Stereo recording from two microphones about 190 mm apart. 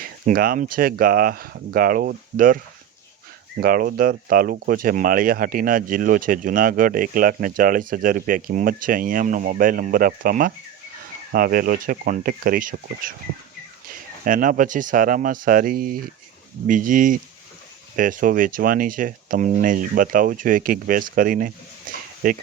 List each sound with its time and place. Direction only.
0.0 s speech: 50° right (ahead or behind)
3.6 s speech: 50° right (ahead or behind)